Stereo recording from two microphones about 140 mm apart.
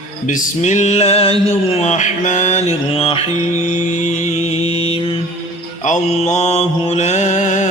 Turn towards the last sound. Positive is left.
turn(degrees=60)  # may be behind; listen again after turning